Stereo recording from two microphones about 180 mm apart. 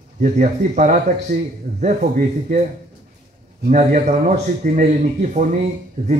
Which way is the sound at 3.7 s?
40° right (ahead or behind).